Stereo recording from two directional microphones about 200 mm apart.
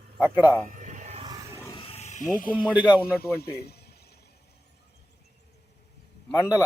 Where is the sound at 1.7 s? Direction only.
30° left (ahead or behind).